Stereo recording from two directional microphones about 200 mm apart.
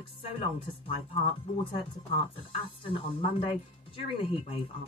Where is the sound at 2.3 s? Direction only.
25° left (ahead or behind).